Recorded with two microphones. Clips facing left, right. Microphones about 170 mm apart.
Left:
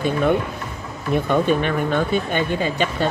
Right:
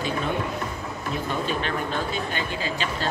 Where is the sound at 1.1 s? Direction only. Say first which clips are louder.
Left 10 dB; 60° left (ahead or behind).